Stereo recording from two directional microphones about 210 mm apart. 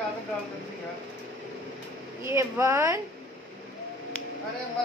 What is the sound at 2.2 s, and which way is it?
Speech, 15° right (ahead or behind).